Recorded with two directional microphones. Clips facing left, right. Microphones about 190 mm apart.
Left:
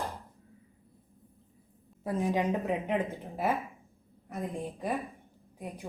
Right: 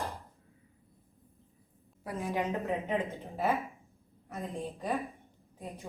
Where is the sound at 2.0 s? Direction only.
15° left (ahead or behind).